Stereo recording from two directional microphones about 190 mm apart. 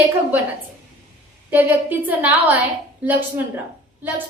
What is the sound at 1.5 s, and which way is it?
A woman's voice, 10° right (ahead or behind).